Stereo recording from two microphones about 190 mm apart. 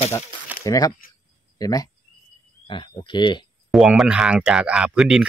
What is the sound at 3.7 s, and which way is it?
Speech, centre (ahead or behind).